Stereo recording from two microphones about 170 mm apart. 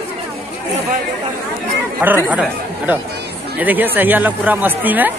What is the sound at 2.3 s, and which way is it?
Speech, 10° right (ahead or behind).